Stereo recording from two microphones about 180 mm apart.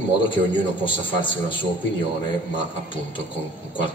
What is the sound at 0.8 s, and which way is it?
Speech, 25° left (ahead or behind).